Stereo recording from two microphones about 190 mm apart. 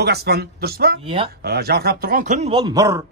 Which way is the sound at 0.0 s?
60° right (ahead or behind).